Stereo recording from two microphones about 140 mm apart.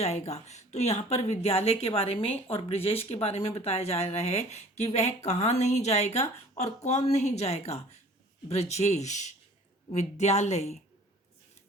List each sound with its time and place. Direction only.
0.0 s speech: 50° left (ahead or behind)